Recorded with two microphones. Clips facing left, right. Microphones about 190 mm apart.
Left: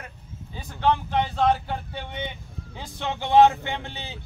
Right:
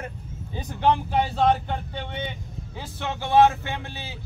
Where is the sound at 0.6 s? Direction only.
15° right (ahead or behind).